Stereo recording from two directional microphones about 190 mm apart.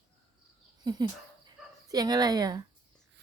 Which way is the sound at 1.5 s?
20° right (ahead or behind).